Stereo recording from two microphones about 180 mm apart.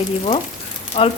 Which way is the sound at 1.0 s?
30° left (ahead or behind).